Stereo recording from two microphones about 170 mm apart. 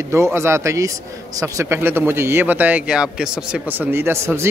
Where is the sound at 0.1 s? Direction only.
15° right (ahead or behind).